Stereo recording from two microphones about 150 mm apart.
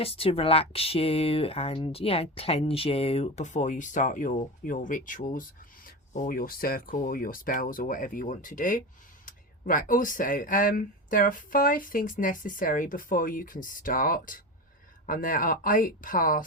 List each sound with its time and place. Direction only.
0.0 s speech: 40° left (ahead or behind); by 16.4 s 65° left (ahead or behind)